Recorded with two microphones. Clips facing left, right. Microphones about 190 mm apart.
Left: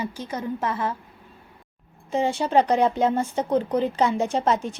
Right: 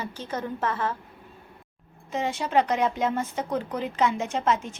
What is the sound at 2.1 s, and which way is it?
Speech, 30° left (ahead or behind).